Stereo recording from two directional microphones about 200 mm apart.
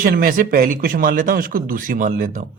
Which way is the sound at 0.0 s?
45° right (ahead or behind).